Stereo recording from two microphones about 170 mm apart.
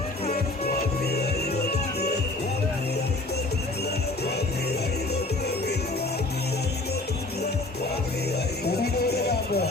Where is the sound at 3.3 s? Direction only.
70° left (ahead or behind).